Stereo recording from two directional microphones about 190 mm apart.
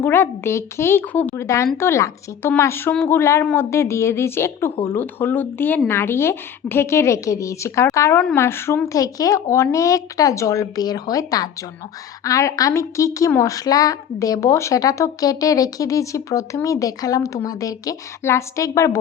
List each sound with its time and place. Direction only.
0.0 s a woman's voice: 10° left (ahead or behind)